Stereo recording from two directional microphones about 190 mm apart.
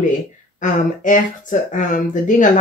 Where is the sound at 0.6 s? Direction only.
45° left (ahead or behind).